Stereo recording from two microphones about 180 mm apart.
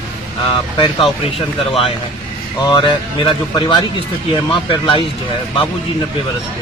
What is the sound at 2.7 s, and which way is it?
Speech, 25° left (ahead or behind).